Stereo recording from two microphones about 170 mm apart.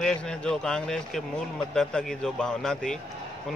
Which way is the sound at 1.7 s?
5° left (ahead or behind).